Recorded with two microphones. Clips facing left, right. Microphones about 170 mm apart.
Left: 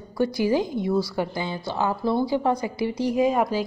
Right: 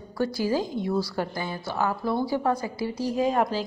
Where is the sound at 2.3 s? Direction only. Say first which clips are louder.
Left 2 dB; 15° left (ahead or behind).